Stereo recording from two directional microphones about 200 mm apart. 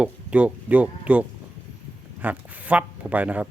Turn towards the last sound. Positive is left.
turn(degrees=-5)  # may be behind; listen again after turning